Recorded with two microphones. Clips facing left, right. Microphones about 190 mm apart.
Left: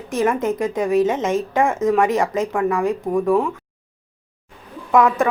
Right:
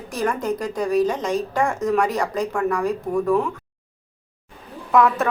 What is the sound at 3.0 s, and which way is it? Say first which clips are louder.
Speech: left 2 dB; 15° left (ahead or behind).